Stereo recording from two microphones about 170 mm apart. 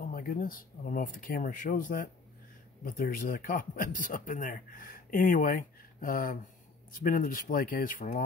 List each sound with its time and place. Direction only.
0.0 s speech: 60° left (ahead or behind)